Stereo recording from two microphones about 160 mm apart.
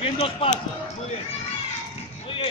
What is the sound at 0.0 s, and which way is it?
Speech, 35° left (ahead or behind).